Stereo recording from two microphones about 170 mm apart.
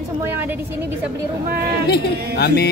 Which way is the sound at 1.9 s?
70° left (ahead or behind).